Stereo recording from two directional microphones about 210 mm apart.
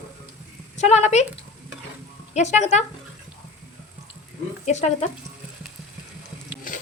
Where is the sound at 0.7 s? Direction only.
35° left (ahead or behind).